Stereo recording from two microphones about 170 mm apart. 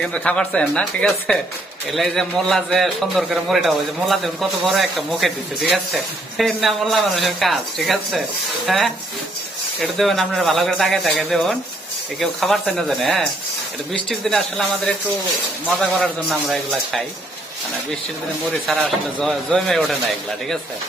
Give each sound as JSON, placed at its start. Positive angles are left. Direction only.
{"t": 0.0, "sound": "a man's voice", "side_deg": 5}
{"t": 16.0, "sound": "a man's voice", "side_deg": 0}
{"t": 18.7, "sound": "a man's voice", "side_deg": 0}